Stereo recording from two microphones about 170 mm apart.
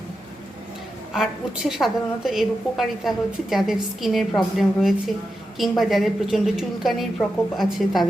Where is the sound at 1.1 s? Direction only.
Centre (ahead or behind).